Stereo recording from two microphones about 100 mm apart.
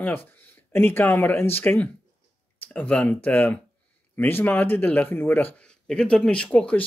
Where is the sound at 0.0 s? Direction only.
20° left (ahead or behind).